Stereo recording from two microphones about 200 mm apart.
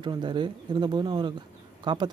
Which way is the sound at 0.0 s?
25° right (ahead or behind).